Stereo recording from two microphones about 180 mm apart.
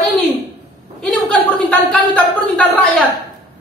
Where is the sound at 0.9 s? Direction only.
5° left (ahead or behind).